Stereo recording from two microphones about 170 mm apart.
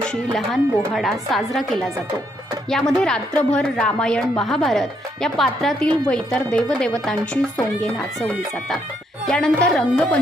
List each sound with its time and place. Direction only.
0.1 s speech: centre (ahead or behind)